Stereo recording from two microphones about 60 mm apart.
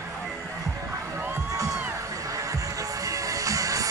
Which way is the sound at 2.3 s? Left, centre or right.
Right.